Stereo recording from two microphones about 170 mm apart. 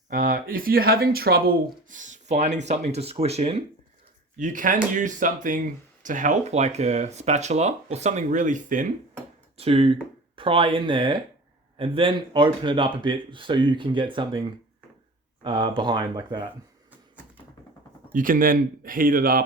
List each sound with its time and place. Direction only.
0.1 s speech: 55° right (ahead or behind); by 3.6 s 40° right (ahead or behind)
4.4 s speech: 50° right (ahead or behind)
9.6 s speech: 35° right (ahead or behind)
15.4 s speech: 30° right (ahead or behind)
18.1 s speech: 55° right (ahead or behind)